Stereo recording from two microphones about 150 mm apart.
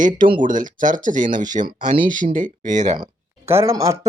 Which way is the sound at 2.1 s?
60° right (ahead or behind).